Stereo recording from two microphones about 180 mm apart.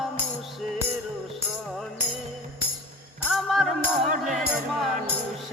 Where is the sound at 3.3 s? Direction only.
Centre (ahead or behind).